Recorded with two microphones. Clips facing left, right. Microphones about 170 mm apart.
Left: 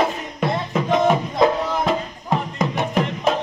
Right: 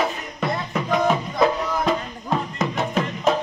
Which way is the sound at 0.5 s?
25° left (ahead or behind).